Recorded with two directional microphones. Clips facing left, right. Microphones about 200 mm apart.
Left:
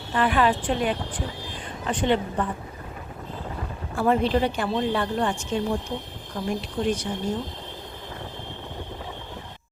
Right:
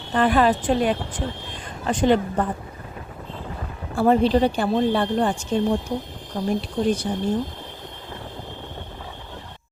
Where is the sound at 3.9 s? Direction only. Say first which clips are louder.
Right 4 dB; 30° right (ahead or behind).